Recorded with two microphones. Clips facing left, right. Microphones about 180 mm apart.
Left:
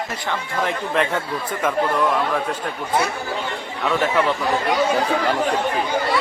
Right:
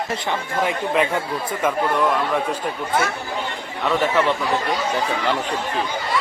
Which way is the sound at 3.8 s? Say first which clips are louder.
Right 1 dB; centre (ahead or behind).